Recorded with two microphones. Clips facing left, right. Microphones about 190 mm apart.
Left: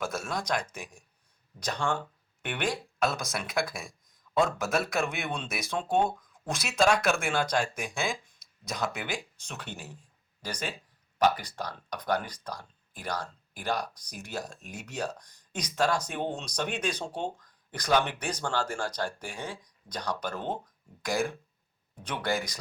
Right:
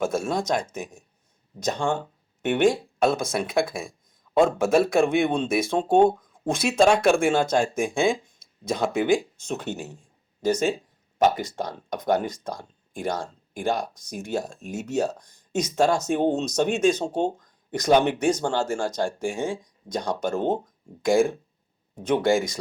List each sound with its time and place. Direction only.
0.0 s speech: 25° right (ahead or behind)
5.8 s speech: 50° right (ahead or behind)
6.1 s speech: 25° right (ahead or behind)
9.7 s speech: 45° right (ahead or behind)
10.4 s speech: 25° right (ahead or behind)